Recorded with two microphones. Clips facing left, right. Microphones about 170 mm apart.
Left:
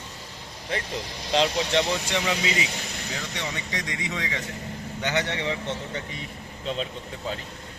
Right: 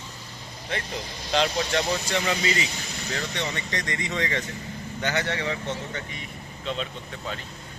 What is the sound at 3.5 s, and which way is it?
Speech, 10° left (ahead or behind).